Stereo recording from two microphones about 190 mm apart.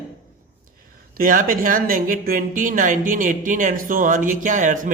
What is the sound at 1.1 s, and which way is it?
A woman's voice, 45° right (ahead or behind).